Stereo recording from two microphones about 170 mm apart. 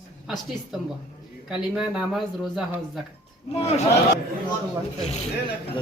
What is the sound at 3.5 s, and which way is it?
Speech, 40° left (ahead or behind).